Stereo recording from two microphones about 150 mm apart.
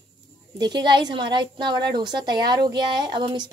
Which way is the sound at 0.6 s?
30° right (ahead or behind).